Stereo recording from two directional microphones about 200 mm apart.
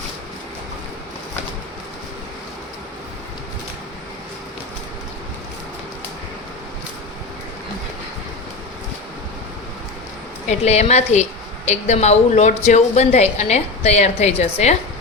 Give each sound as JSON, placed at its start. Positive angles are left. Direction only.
{"t": 10.5, "sound": "a woman's voice", "side_deg": 30}